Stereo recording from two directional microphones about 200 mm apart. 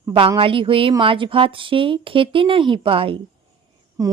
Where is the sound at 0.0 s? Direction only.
25° right (ahead or behind).